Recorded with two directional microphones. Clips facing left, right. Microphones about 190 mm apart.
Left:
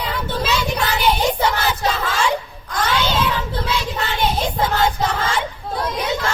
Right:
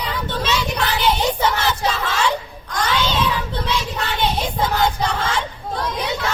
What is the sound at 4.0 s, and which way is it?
Child singing, 5° left (ahead or behind).